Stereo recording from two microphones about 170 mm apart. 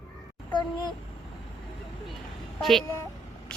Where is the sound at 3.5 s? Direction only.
5° left (ahead or behind).